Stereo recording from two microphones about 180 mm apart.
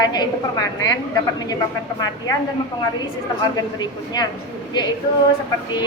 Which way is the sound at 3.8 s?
20° left (ahead or behind).